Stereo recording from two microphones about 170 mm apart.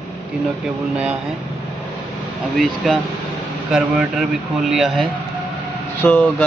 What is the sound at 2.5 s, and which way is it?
Speech, centre (ahead or behind).